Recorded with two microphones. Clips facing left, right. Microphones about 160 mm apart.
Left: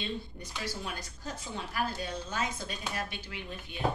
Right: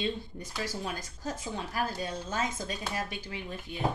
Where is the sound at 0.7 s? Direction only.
45° right (ahead or behind).